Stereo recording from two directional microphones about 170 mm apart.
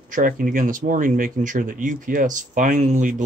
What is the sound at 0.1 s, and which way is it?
Speech, 55° right (ahead or behind).